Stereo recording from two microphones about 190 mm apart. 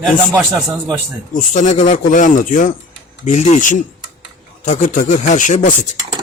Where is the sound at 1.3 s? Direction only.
40° left (ahead or behind).